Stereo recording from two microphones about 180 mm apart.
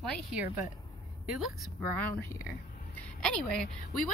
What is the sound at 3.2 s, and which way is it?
Speech, 5° left (ahead or behind).